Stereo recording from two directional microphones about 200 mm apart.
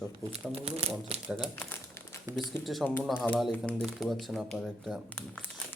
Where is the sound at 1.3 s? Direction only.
5° left (ahead or behind).